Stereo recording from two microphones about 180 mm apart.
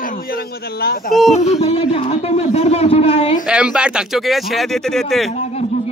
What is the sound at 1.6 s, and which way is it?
A man's voice, 35° left (ahead or behind).